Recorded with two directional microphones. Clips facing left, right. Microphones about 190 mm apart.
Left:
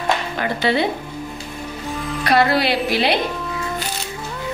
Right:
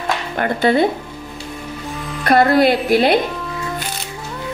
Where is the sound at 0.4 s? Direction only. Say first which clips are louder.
Right 7 dB; 50° right (ahead or behind).